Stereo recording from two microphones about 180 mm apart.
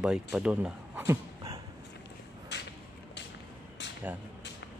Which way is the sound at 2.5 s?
75° left (ahead or behind).